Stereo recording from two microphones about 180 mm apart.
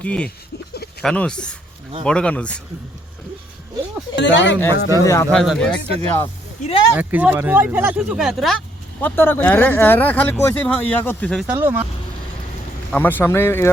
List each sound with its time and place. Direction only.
0.0 s speech: 5° left (ahead or behind)
4.1 s speech: 80° left
4.9 s speech: 15° left (ahead or behind)
5.3 s speech: 5° left (ahead or behind)
6.7 s speech: 30° left (ahead or behind)
6.9 s speech: 10° right (ahead or behind)
11.4 s speech: 10° right (ahead or behind)
12.9 s speech: 10° left (ahead or behind)